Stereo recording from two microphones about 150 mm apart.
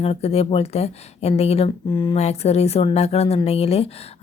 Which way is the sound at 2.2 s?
45° left (ahead or behind).